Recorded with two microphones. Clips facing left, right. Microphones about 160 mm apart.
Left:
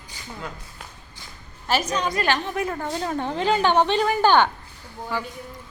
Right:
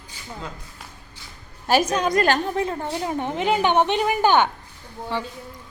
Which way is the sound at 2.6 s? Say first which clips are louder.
Right 1 dB; 25° right (ahead or behind).